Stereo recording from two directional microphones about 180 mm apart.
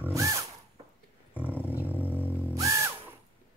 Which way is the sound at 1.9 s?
10° left (ahead or behind).